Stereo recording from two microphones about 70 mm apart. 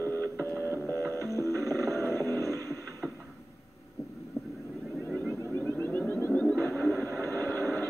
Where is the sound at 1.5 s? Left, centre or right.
Right.